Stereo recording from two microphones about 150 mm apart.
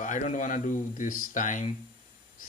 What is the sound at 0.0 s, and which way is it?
Speech, 55° left (ahead or behind).